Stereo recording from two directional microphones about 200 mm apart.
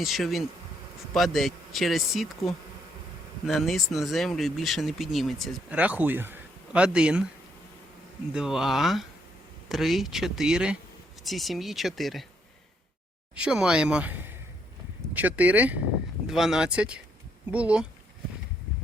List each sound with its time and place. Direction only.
0.0 s speech: centre (ahead or behind)
8.3 s speech: 5° right (ahead or behind)
13.3 s speech: 5° right (ahead or behind)